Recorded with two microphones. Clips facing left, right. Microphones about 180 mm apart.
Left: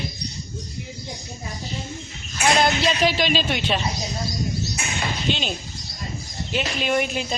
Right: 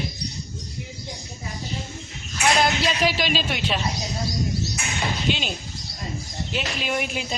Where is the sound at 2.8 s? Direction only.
5° right (ahead or behind).